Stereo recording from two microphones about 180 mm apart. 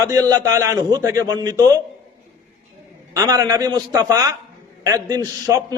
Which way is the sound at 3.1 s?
20° right (ahead or behind).